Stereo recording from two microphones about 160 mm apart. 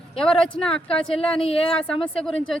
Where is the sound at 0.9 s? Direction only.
35° left (ahead or behind).